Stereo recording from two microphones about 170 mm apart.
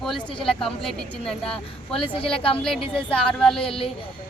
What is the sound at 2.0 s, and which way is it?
Speech, 30° left (ahead or behind).